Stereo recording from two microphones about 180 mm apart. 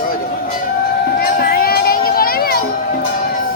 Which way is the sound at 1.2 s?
55° left (ahead or behind).